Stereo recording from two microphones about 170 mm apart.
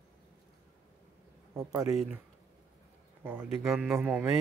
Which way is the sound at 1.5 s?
15° right (ahead or behind).